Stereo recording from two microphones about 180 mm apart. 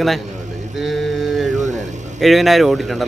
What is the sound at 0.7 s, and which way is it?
Mantra, centre (ahead or behind).